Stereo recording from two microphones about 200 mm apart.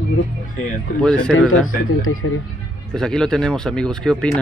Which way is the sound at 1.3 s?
90° left.